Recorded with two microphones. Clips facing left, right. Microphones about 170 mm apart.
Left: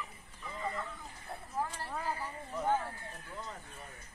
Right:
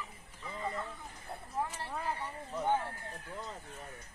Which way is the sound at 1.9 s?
Centre (ahead or behind).